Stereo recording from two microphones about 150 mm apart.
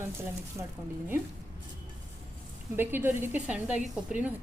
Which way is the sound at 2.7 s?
15° right (ahead or behind).